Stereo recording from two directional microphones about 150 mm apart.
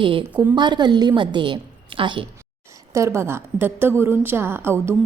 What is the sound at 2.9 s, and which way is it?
A woman's voice, 20° right (ahead or behind).